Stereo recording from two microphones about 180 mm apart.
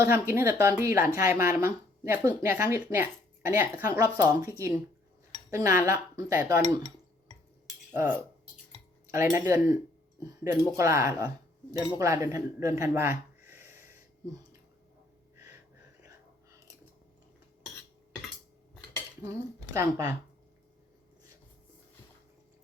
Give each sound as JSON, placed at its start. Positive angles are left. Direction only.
{"t": 0.0, "sound": "speech", "side_deg": -15}
{"t": 5.5, "sound": "speech", "side_deg": -15}
{"t": 9.1, "sound": "speech", "side_deg": -10}
{"t": 16.0, "sound": "whispering", "side_deg": -20}
{"t": 19.2, "sound": "speech", "side_deg": -15}